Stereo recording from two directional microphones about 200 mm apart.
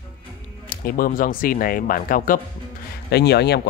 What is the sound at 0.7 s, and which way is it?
Speech, 45° left (ahead or behind).